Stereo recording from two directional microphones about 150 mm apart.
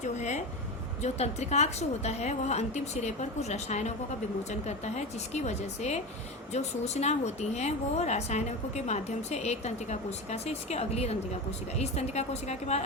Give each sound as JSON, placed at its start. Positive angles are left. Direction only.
{"t": 0.0, "sound": "a woman's voice", "side_deg": 50}